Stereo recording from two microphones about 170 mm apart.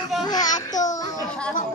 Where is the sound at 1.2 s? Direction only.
5° left (ahead or behind).